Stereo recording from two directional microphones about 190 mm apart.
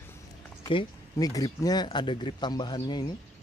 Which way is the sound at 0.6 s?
20° left (ahead or behind).